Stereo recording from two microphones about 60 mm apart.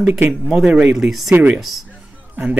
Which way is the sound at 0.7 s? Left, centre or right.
Right.